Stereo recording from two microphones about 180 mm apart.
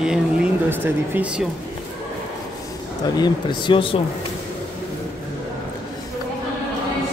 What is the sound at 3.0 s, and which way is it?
Speech, 25° left (ahead or behind).